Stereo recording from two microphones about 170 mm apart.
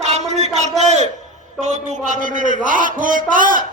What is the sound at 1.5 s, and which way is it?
A man's voice, 45° right (ahead or behind).